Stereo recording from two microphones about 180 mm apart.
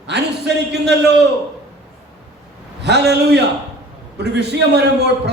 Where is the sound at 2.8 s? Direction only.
70° right (ahead or behind).